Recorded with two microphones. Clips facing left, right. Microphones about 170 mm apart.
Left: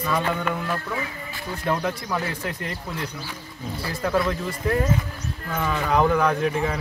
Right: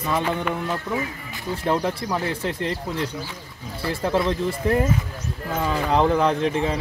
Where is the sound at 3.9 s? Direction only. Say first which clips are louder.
Right 2 dB; 25° right (ahead or behind).